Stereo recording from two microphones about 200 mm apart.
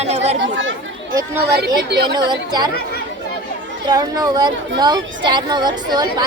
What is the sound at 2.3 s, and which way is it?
Speech, 20° right (ahead or behind).